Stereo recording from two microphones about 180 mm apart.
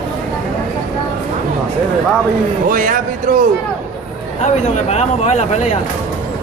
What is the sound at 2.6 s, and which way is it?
Speech, 50° right (ahead or behind).